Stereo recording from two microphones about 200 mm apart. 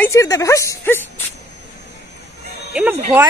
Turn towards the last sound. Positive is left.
turn(degrees=-5)  # may be behind; listen again after turning